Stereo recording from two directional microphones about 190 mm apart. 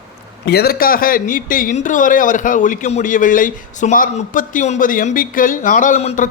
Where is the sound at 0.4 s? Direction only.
55° left (ahead or behind).